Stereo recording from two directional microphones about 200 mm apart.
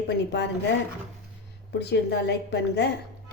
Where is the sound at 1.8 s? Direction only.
55° left (ahead or behind).